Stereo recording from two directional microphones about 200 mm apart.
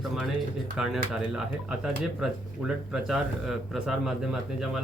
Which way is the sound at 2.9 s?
Centre (ahead or behind).